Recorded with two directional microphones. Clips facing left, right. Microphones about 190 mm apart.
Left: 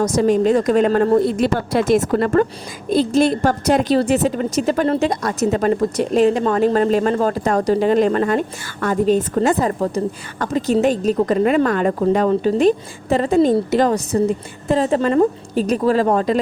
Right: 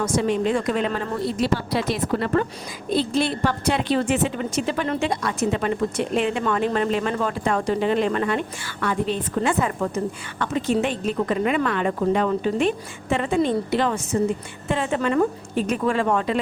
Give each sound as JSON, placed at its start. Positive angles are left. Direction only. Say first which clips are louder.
{"t": 0.0, "sound": "a woman's voice", "louder": "left 6 dB", "side_deg": 40}